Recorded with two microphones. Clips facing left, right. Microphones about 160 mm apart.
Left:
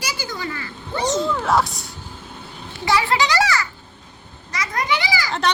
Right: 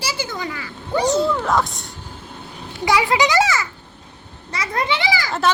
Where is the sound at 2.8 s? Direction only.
15° right (ahead or behind).